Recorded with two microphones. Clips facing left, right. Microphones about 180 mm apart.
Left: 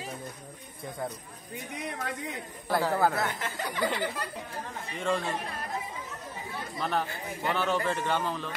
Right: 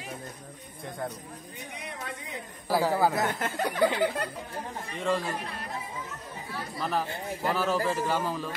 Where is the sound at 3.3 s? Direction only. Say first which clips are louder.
Right 5 dB; 60° right (ahead or behind).